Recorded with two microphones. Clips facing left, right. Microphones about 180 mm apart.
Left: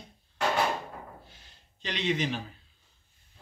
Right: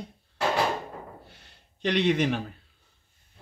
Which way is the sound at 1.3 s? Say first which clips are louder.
Right 3 dB; 65° right (ahead or behind).